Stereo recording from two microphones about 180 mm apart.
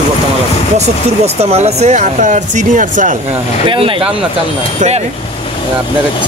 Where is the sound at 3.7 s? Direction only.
30° right (ahead or behind).